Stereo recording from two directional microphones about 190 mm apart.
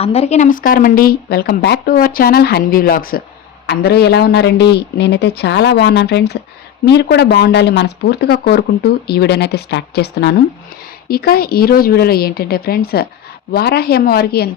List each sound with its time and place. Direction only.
0.0 s speech: 30° left (ahead or behind); by 14.5 s 55° left (ahead or behind)